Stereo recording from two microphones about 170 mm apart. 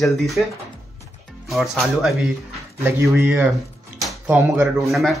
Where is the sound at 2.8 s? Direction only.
15° right (ahead or behind).